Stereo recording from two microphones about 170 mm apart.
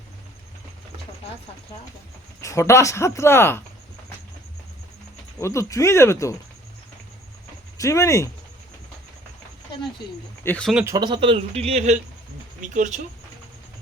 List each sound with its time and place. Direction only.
2.4 s speech: 15° left (ahead or behind)
5.4 s speech: 15° left (ahead or behind)
7.8 s speech: 15° left (ahead or behind)
10.4 s speech: 10° left (ahead or behind)
10.8 s speech: 25° right (ahead or behind); by 13.1 s 50° right (ahead or behind)